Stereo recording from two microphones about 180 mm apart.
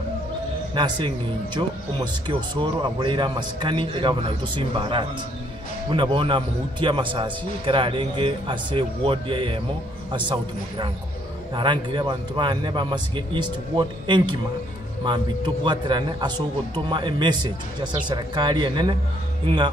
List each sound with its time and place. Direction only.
0.7 s speech: 25° right (ahead or behind)